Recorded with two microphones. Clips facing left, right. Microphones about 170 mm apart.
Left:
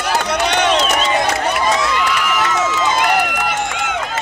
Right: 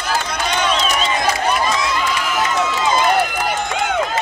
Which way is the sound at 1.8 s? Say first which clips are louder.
Left 2 dB; 65° left (ahead or behind).